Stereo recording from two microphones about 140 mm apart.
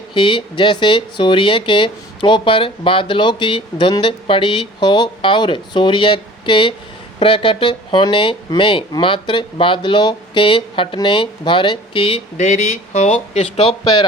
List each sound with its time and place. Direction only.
0.1 s speech: 35° left (ahead or behind)
12.4 s speech: 55° left (ahead or behind)